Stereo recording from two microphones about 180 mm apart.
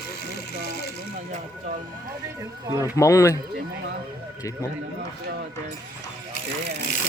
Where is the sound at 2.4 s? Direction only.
20° right (ahead or behind).